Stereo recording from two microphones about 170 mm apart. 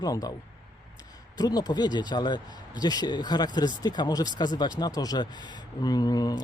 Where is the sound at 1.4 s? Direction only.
25° left (ahead or behind).